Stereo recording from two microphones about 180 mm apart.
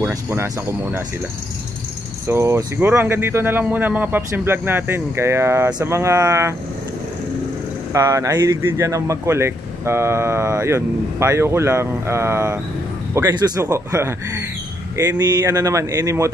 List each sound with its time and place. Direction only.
0.1 s speech: 15° right (ahead or behind)
2.2 s speech: 15° right (ahead or behind)
7.9 s speech: 20° right (ahead or behind)